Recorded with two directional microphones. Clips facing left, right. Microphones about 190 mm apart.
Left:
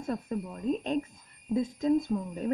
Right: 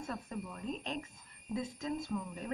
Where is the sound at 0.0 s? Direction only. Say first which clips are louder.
Left 8 dB; 35° left (ahead or behind).